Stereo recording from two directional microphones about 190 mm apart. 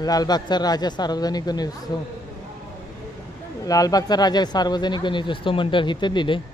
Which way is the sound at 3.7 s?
20° left (ahead or behind).